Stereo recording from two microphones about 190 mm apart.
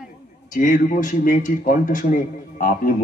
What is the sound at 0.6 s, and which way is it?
A man's voice, 45° left (ahead or behind).